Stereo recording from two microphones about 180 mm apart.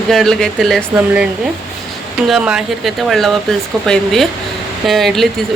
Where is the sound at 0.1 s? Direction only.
Centre (ahead or behind).